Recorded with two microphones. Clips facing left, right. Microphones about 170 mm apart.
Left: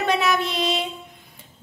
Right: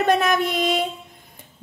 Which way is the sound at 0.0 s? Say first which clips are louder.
Right 3 dB; 50° right (ahead or behind).